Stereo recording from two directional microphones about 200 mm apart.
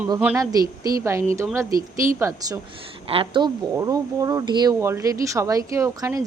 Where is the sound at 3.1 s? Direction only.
25° right (ahead or behind).